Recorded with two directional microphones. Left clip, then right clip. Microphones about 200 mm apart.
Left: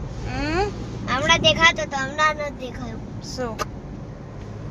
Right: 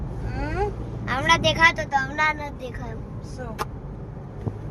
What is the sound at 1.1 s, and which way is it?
Speech, 15° right (ahead or behind).